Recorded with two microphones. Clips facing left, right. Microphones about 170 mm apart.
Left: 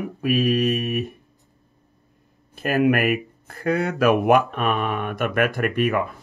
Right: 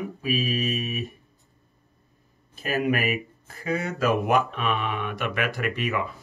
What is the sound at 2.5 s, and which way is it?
Speech, 60° left (ahead or behind).